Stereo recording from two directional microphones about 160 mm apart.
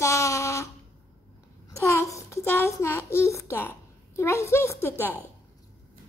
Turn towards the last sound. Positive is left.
turn(degrees=15)  # may be behind; listen again after turning